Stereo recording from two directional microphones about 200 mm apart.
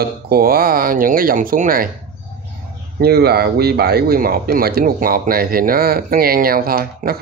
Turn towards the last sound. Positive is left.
turn(degrees=-50)  # may be behind; listen again after turning